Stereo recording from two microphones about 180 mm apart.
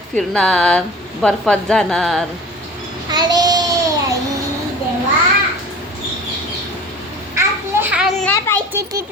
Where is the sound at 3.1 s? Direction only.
25° right (ahead or behind).